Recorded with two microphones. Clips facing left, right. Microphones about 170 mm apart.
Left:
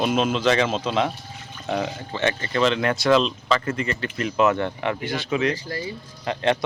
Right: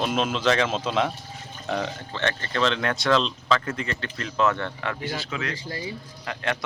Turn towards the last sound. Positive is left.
turn(degrees=25)  # may be behind; listen again after turning